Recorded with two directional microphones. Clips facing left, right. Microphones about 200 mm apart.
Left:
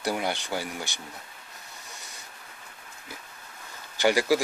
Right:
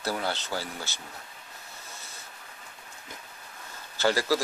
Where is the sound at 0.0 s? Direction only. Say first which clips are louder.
Left 2 dB; 15° left (ahead or behind).